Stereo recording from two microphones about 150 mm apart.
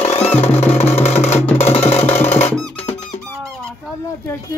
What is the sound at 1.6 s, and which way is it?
Music, 40° left (ahead or behind).